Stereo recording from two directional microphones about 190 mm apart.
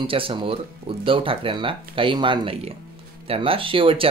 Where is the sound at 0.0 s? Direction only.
30° right (ahead or behind).